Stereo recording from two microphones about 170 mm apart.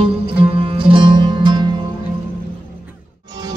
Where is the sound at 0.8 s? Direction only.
30° right (ahead or behind).